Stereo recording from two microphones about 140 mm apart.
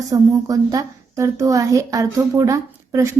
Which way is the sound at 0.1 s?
25° right (ahead or behind).